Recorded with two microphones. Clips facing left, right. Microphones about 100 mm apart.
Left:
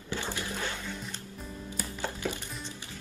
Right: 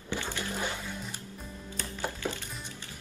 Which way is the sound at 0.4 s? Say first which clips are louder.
Right 1 dB; 15° right (ahead or behind).